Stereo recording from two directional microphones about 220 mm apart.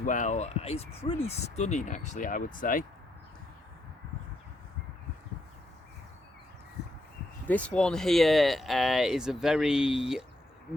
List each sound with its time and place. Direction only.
0.0 s speech: 35° left (ahead or behind)
7.4 s speech: 5° left (ahead or behind)